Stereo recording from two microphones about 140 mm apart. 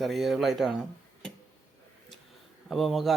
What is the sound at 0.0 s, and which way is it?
Speech, centre (ahead or behind).